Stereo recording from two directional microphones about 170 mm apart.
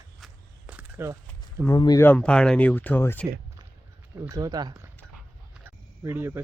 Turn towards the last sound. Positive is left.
turn(degrees=-15)  # may be behind; listen again after turning